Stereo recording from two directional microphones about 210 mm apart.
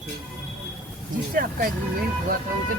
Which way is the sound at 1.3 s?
45° right (ahead or behind).